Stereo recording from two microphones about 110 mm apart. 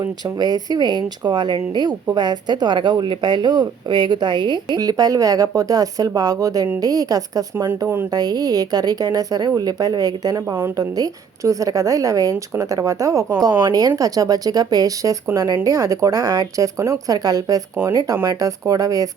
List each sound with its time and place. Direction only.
0.0 s a woman's voice: 35° right (ahead or behind)
8.1 s speech: 35° right (ahead or behind)
10.4 s a woman's voice: 20° right (ahead or behind)
10.8 s speech: 35° right (ahead or behind)
13.6 s speech: 40° right (ahead or behind)